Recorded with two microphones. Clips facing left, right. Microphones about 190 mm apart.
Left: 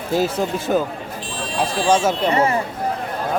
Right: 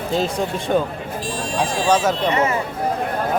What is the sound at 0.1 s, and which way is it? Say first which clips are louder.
Speech: left 2 dB; 5° left (ahead or behind).